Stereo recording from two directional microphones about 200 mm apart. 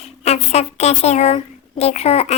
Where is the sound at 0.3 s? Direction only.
30° left (ahead or behind).